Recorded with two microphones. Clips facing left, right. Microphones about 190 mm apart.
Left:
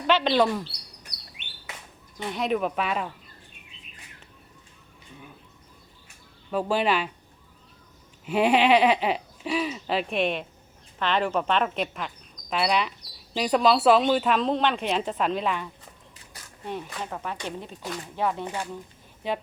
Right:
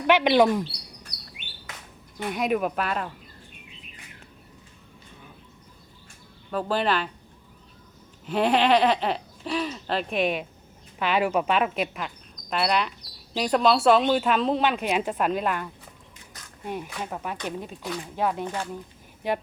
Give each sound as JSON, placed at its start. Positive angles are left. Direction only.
{"t": 0.1, "sound": "speech", "side_deg": -15}
{"t": 2.1, "sound": "speech", "side_deg": -10}
{"t": 6.5, "sound": "speech", "side_deg": 10}
{"t": 8.3, "sound": "speech", "side_deg": 10}
{"t": 18.4, "sound": "speech", "side_deg": 15}